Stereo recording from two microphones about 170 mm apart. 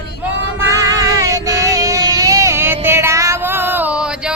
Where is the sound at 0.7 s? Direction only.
20° right (ahead or behind).